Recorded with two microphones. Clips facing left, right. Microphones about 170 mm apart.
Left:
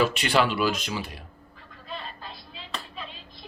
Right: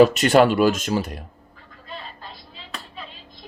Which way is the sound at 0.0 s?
40° right (ahead or behind).